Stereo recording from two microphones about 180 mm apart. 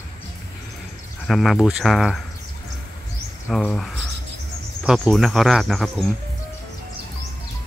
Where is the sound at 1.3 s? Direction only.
Centre (ahead or behind).